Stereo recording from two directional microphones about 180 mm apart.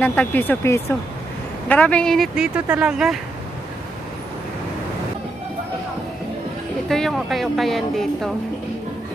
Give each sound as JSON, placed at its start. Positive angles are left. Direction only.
{"t": 0.0, "sound": "speech", "side_deg": 10}
{"t": 6.9, "sound": "speech", "side_deg": 0}